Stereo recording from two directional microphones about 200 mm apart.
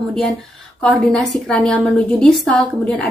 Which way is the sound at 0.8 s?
Centre (ahead or behind).